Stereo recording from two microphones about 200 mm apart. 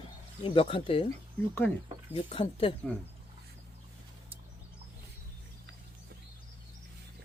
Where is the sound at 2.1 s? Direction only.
30° left (ahead or behind).